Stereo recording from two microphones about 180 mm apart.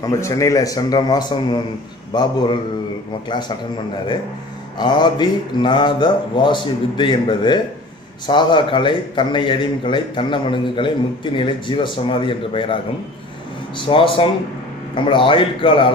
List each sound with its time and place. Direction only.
0.0 s a man's voice: 20° left (ahead or behind)
4.7 s a man's voice: 25° left (ahead or behind)
13.7 s a man's voice: 30° left (ahead or behind)